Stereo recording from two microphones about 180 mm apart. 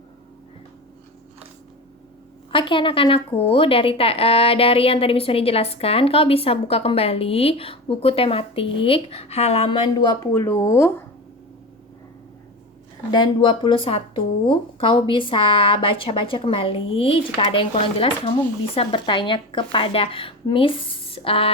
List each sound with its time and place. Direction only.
2.5 s speech: 25° left (ahead or behind)
10.3 s speech: 15° left (ahead or behind)
13.1 s speech: 25° left (ahead or behind)